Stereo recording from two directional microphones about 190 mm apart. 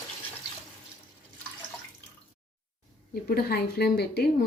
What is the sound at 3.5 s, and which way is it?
Speech, 55° left (ahead or behind).